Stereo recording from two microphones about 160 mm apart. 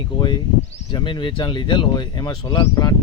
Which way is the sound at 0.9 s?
30° left (ahead or behind).